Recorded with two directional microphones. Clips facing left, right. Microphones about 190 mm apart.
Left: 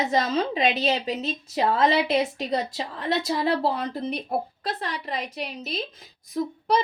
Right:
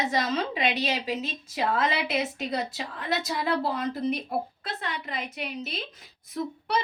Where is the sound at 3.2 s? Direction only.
30° left (ahead or behind).